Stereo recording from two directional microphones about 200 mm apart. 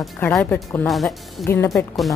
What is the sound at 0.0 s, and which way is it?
Speech, 5° left (ahead or behind).